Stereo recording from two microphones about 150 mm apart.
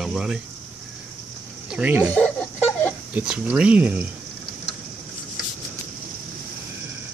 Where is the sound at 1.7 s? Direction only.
10° right (ahead or behind).